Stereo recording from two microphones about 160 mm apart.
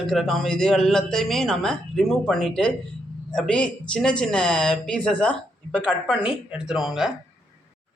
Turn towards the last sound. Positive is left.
turn(degrees=0)  # may be behind; listen again after turning